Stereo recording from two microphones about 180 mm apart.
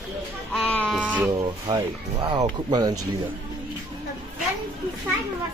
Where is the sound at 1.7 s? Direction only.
20° right (ahead or behind).